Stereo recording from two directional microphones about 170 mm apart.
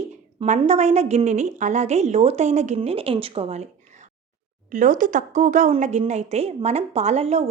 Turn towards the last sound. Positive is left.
turn(degrees=-40)  # may be behind; listen again after turning